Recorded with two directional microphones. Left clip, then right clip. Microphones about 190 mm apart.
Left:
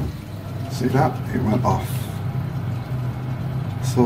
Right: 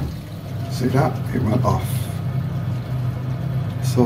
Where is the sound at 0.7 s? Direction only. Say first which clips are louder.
Even; centre (ahead or behind).